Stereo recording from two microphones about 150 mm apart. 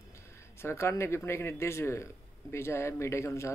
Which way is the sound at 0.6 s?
15° left (ahead or behind).